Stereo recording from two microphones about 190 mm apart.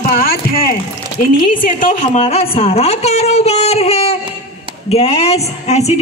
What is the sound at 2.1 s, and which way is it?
A woman's voice, 35° left (ahead or behind).